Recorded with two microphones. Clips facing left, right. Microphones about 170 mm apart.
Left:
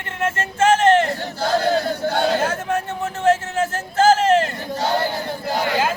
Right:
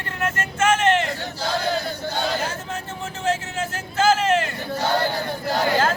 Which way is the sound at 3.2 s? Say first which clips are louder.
Left 7 dB; 45° left (ahead or behind).